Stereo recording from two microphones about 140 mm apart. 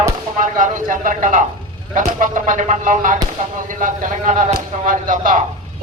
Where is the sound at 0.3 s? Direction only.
70° right (ahead or behind).